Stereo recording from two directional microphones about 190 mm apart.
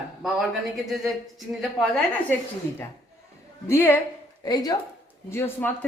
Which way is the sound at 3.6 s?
10° left (ahead or behind).